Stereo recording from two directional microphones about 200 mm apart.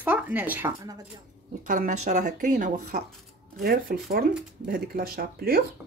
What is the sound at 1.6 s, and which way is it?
Speech, 40° right (ahead or behind).